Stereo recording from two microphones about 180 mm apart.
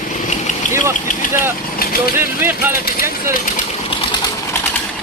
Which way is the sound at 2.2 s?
15° right (ahead or behind).